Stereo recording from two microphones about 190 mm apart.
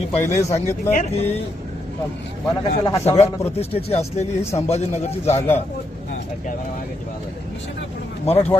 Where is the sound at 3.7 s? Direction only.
35° left (ahead or behind).